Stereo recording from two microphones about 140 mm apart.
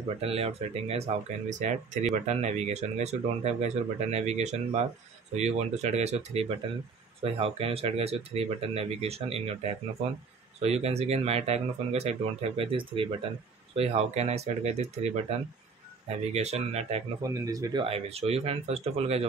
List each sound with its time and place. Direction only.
0.2 s speech: 45° right (ahead or behind)
17.2 s speech: 25° right (ahead or behind)
17.8 s speech: 45° right (ahead or behind)